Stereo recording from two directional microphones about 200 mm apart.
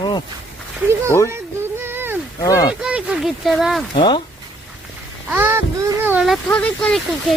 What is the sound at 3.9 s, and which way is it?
Speech, 25° left (ahead or behind).